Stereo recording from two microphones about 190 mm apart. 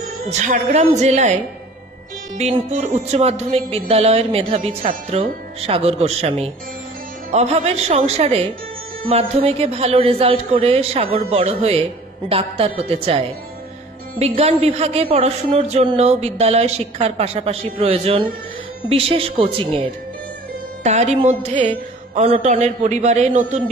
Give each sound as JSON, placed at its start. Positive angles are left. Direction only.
{"t": 0.3, "sound": "speech", "side_deg": -40}
{"t": 2.3, "sound": "a woman's voice", "side_deg": -35}
{"t": 14.2, "sound": "a woman's voice", "side_deg": -30}